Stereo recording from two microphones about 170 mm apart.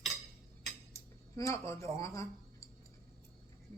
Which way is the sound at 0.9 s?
15° left (ahead or behind).